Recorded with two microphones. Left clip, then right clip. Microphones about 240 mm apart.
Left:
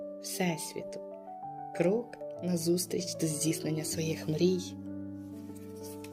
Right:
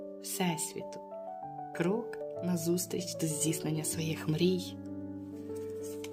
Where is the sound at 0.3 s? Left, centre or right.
Centre.